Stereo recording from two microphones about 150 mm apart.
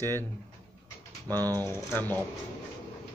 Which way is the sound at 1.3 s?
15° left (ahead or behind).